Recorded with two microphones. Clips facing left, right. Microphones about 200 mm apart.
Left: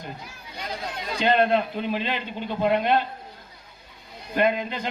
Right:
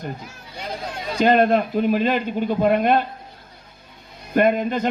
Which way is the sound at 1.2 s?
45° right (ahead or behind).